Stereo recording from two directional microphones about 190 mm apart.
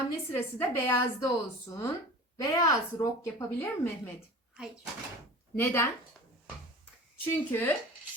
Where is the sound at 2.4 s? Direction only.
20° left (ahead or behind).